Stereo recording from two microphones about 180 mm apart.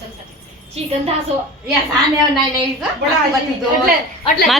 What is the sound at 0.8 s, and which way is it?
Speech, 35° right (ahead or behind).